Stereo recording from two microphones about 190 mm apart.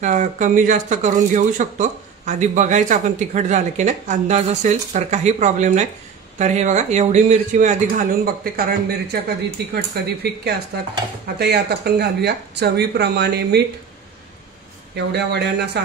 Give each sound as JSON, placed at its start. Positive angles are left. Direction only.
{"t": 0.0, "sound": "speech", "side_deg": -40}
{"t": 15.0, "sound": "speech", "side_deg": -60}